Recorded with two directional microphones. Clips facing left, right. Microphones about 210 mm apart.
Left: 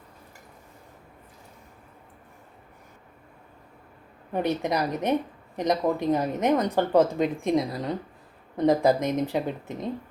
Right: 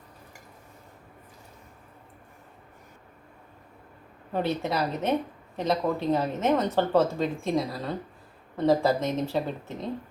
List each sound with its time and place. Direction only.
4.3 s speech: 15° left (ahead or behind)